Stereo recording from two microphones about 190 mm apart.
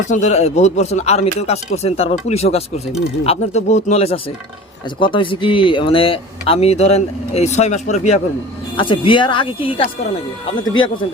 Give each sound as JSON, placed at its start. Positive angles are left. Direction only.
{"t": 0.0, "sound": "speech", "side_deg": 40}
{"t": 8.7, "sound": "speech", "side_deg": 25}